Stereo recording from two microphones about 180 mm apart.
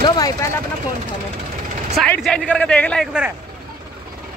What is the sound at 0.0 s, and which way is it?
Speech, 20° left (ahead or behind).